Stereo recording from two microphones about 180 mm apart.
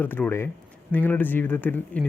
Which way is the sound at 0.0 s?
10° left (ahead or behind).